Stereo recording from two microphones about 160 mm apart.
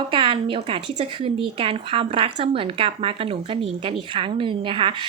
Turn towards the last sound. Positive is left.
turn(degrees=-35)  # may be behind; listen again after turning